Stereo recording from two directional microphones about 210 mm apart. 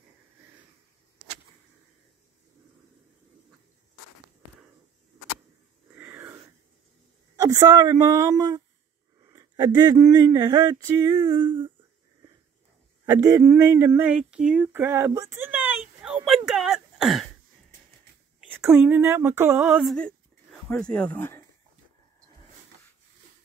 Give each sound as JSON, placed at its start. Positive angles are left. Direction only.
{"t": 5.9, "sound": "wheeze", "side_deg": -10}
{"t": 7.4, "sound": "speech", "side_deg": -15}
{"t": 13.2, "sound": "a sound", "side_deg": -15}
{"t": 18.6, "sound": "speech", "side_deg": -10}